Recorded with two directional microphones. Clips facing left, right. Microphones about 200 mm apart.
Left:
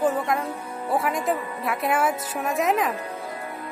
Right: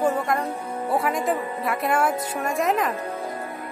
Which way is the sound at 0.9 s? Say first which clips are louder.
Even; centre (ahead or behind).